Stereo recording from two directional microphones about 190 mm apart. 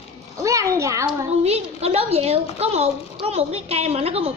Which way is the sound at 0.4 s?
15° right (ahead or behind).